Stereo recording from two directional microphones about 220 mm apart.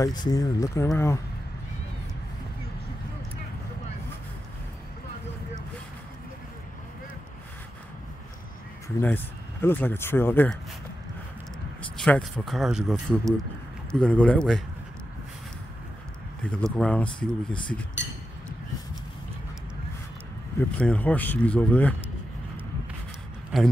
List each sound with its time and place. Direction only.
0.0 s speech: 20° left (ahead or behind)
8.8 s speech: 10° left (ahead or behind)
12.0 s speech: 5° left (ahead or behind)
16.4 s speech: 5° left (ahead or behind)
20.5 s speech: 5° left (ahead or behind)
23.5 s a man's voice: centre (ahead or behind)